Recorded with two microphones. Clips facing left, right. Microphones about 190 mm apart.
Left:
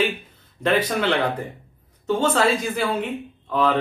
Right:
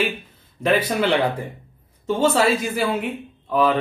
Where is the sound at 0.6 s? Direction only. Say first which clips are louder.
Right 1 dB; 10° right (ahead or behind).